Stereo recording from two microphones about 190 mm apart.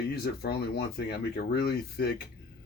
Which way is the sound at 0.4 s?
55° left (ahead or behind).